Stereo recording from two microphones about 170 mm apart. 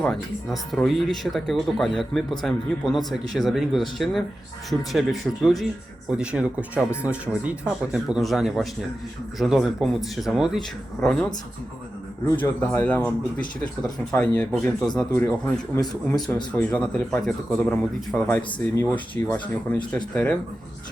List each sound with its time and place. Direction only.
0.0 s speech: centre (ahead or behind)
15.8 s a man's voice: 25° left (ahead or behind)
16.5 s speech: 5° left (ahead or behind)